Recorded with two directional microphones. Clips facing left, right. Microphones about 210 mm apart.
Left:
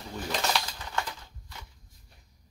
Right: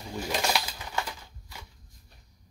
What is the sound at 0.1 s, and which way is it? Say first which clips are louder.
Bird: right 1 dB; 10° right (ahead or behind).